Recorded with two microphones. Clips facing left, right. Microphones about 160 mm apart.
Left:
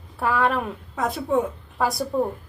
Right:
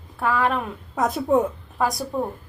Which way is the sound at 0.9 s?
45° right (ahead or behind).